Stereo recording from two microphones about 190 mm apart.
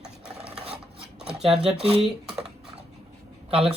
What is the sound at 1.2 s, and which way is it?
Speech, 5° right (ahead or behind).